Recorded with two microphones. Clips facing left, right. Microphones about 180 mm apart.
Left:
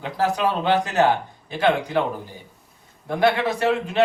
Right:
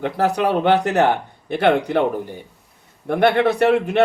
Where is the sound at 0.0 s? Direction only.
65° right (ahead or behind).